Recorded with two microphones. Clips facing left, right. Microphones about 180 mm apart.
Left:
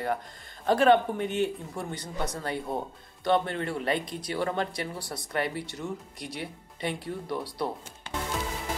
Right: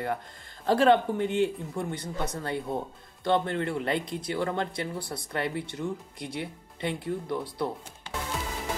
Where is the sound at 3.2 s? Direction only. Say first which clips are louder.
Even; 25° right (ahead or behind).